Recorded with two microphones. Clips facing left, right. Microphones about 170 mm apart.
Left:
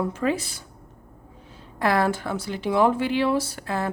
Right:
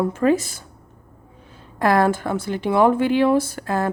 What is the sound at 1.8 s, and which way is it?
A woman's voice, 45° right (ahead or behind).